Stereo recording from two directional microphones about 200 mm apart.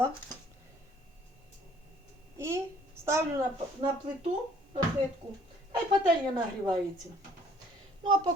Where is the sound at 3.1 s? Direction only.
15° right (ahead or behind).